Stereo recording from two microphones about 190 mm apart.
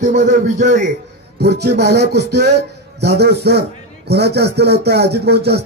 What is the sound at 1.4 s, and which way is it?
A man's voice, 60° right (ahead or behind).